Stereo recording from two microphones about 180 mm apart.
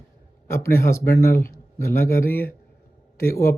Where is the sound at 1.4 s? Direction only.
50° left (ahead or behind).